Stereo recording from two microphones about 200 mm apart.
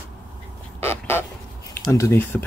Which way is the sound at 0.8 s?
10° left (ahead or behind).